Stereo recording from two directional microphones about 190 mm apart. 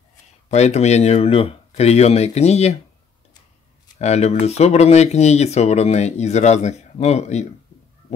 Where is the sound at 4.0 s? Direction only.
35° left (ahead or behind).